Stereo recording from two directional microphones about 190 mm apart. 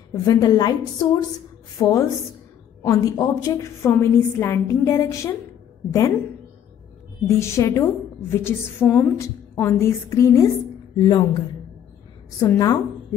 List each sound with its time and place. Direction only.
0.1 s a woman's voice: 20° left (ahead or behind)
7.2 s a woman's voice: 15° left (ahead or behind)
12.4 s a woman's voice: 20° left (ahead or behind)